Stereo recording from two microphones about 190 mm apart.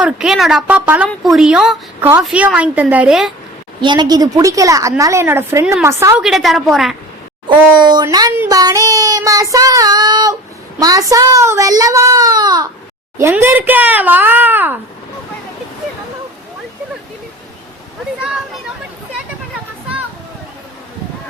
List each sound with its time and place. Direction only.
0.0 s a woman's voice: 5° right (ahead or behind)
3.8 s a woman's voice: 25° right (ahead or behind)
6.2 s a woman's voice: centre (ahead or behind)
7.8 s child singing: 20° right (ahead or behind)
13.1 s a woman's voice: 10° right (ahead or behind)
18.2 s a sound: 5° right (ahead or behind)